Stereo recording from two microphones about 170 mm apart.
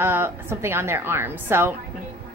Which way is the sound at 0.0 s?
15° right (ahead or behind).